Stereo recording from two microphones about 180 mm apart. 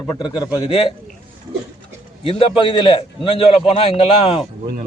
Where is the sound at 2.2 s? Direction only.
30° left (ahead or behind).